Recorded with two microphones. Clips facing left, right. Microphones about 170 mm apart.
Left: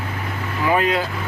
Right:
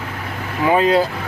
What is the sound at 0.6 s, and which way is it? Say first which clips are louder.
Speech: right 4 dB; 30° right (ahead or behind).